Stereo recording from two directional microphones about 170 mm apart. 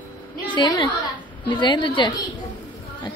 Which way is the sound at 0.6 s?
25° left (ahead or behind).